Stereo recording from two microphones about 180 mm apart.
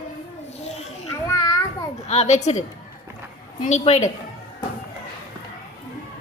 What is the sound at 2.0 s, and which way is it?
A woman's voice, 40° left (ahead or behind).